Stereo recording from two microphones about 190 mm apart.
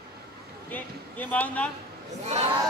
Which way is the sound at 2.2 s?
35° right (ahead or behind).